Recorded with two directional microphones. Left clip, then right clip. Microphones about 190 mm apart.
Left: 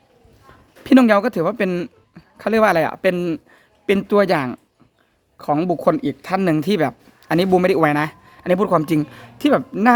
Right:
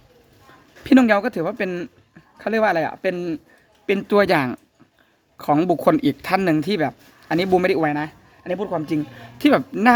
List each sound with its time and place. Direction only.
0.9 s speech: 10° left (ahead or behind)
3.8 s speech: 5° left (ahead or behind)
7.8 s speech: 20° left (ahead or behind)
8.5 s speech: 35° left (ahead or behind)
9.4 s speech: 5° left (ahead or behind)